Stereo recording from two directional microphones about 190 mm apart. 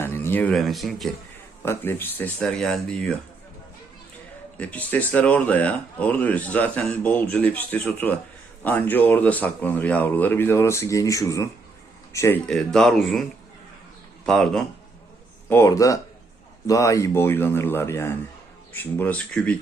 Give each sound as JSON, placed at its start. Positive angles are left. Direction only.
{"t": 0.0, "sound": "speech", "side_deg": 10}
{"t": 1.6, "sound": "speech", "side_deg": 10}
{"t": 4.5, "sound": "speech", "side_deg": 5}
{"t": 12.5, "sound": "speech", "side_deg": 5}
{"t": 14.3, "sound": "speech", "side_deg": 0}
{"t": 15.4, "sound": "speech", "side_deg": 15}